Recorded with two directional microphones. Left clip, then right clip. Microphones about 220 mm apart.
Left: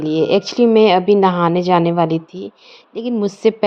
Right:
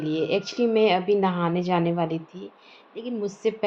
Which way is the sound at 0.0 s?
40° left (ahead or behind).